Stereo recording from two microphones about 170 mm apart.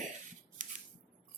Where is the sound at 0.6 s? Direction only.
50° right (ahead or behind).